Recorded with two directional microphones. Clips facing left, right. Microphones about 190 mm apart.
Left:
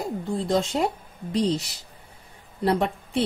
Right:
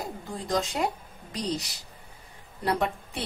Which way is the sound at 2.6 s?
25° left (ahead or behind).